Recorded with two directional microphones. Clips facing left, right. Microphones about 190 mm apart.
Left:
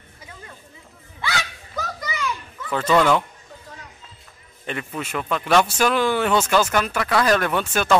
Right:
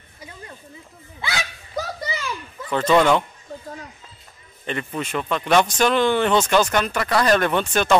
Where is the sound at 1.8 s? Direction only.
30° right (ahead or behind).